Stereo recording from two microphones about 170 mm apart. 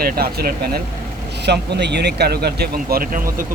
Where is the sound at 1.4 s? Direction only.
80° right.